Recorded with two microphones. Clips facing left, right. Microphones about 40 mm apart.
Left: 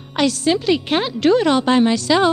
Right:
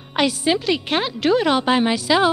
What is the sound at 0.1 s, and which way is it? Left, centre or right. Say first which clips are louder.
Speech: left 2 dB; centre.